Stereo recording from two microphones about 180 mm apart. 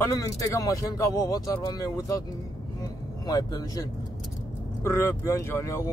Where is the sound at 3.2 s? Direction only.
20° left (ahead or behind).